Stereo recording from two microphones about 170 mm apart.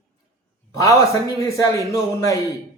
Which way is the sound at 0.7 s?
20° left (ahead or behind).